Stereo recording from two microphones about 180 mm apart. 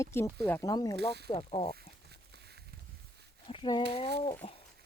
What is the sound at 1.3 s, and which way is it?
Speech, 30° left (ahead or behind).